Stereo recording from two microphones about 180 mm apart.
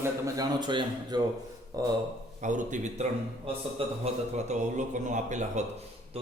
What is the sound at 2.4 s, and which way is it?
A man's voice, 45° right (ahead or behind).